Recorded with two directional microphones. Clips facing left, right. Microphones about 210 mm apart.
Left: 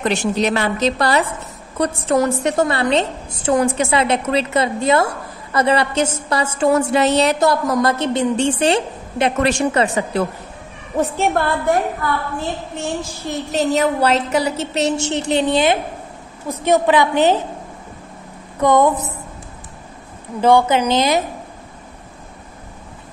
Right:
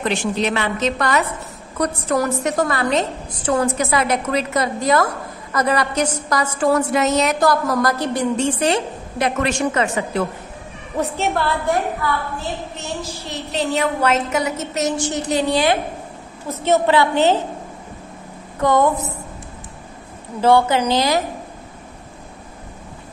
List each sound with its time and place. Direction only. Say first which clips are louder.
0.1 s a woman's voice: left 2 dB; 40° left (ahead or behind)
11.1 s a woman's voice: left 2 dB; 50° left (ahead or behind)
12.7 s a woman's voice: left 4 dB; 50° left (ahead or behind); by 17.4 s 15° left (ahead or behind)
18.6 s a woman's voice: left 2 dB; 20° left (ahead or behind)
20.3 s a woman's voice: left 1 dB; 15° left (ahead or behind)